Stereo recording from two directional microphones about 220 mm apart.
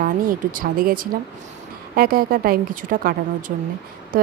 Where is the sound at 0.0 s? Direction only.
40° right (ahead or behind).